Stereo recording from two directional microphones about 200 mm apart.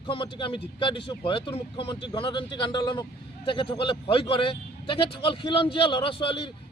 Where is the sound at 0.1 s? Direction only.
25° left (ahead or behind).